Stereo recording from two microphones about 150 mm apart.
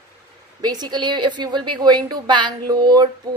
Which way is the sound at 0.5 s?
25° right (ahead or behind).